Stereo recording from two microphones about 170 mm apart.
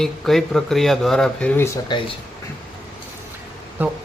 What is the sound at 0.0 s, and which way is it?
Speech, centre (ahead or behind).